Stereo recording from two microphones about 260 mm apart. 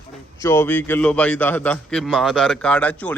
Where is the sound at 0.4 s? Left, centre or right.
Centre.